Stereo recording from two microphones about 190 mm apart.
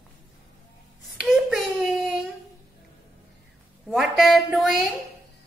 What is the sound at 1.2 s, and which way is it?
Child singing, centre (ahead or behind).